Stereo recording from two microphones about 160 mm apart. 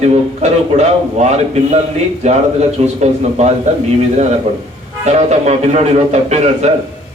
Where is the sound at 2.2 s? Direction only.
45° right (ahead or behind).